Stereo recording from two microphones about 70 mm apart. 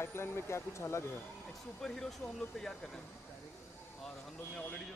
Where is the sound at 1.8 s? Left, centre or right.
Centre.